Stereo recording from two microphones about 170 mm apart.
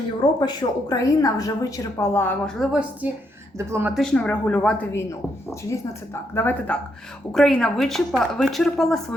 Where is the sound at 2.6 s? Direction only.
5° right (ahead or behind).